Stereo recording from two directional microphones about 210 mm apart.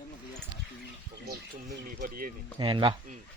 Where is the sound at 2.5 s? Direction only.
20° right (ahead or behind).